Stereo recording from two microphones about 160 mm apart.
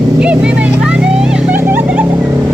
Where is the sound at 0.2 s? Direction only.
5° right (ahead or behind).